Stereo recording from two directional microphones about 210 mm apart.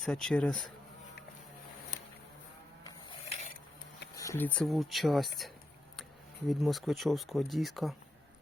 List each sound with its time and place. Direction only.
0.0 s speech: 5° left (ahead or behind)
2.8 s printer: 25° left (ahead or behind)
4.1 s speech: 15° left (ahead or behind); by 5.5 s centre (ahead or behind)
6.5 s speech: centre (ahead or behind)